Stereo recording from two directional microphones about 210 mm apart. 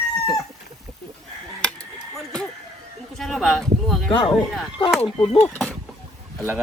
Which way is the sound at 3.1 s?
Centre (ahead or behind).